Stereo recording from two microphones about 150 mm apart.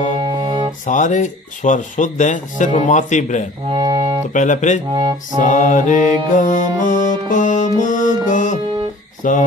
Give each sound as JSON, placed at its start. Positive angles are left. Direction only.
{"t": 0.2, "sound": "music", "side_deg": -30}
{"t": 0.8, "sound": "speech", "side_deg": 55}
{"t": 3.7, "sound": "music", "side_deg": -25}
{"t": 4.3, "sound": "speech", "side_deg": 55}
{"t": 5.4, "sound": "music", "side_deg": 55}
{"t": 9.2, "sound": "speech", "side_deg": 60}